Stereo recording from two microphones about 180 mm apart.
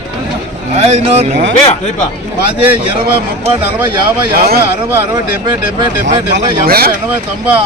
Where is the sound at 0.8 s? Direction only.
35° right (ahead or behind).